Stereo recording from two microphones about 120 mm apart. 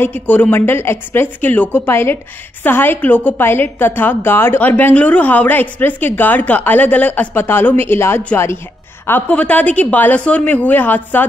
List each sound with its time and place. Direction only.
0.0 s a woman's voice: 15° left (ahead or behind)